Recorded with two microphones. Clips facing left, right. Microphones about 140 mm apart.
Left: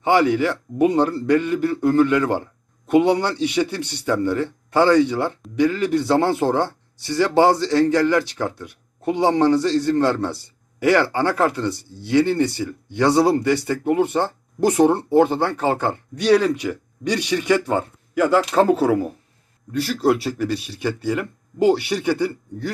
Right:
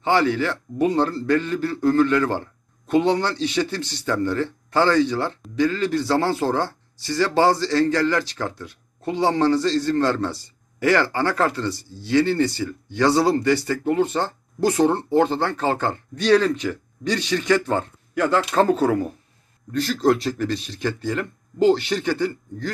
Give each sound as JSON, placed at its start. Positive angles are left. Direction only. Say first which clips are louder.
{"t": 0.0, "sound": "a man's voice", "louder": "left 3 dB", "side_deg": 15}